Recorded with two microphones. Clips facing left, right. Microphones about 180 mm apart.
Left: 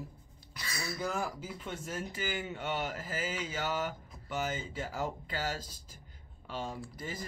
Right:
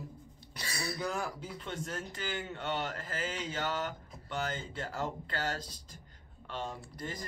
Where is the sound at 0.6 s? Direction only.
30° right (ahead or behind).